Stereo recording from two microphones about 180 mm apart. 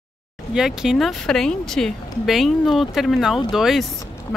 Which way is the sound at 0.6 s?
Centre (ahead or behind).